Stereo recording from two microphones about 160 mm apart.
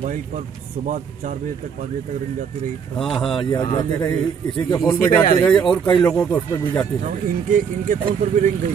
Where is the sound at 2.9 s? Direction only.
Centre (ahead or behind).